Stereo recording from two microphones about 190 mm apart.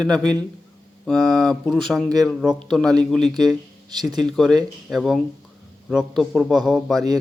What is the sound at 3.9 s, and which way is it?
Speech, 20° right (ahead or behind).